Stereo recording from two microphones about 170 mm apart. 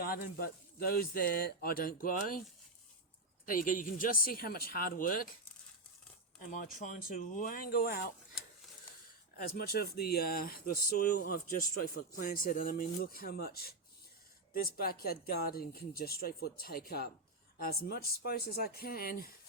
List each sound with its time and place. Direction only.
0.0 s speech: 60° left (ahead or behind)
3.4 s speech: 55° left (ahead or behind)
6.5 s speech: 50° left (ahead or behind)
9.4 s speech: 60° left (ahead or behind)